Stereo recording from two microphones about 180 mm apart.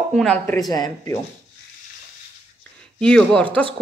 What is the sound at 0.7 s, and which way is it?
Speech, 20° left (ahead or behind).